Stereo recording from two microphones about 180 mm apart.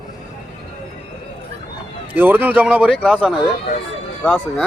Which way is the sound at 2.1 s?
10° right (ahead or behind).